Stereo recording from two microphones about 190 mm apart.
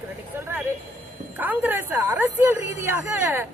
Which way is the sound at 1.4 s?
10° right (ahead or behind).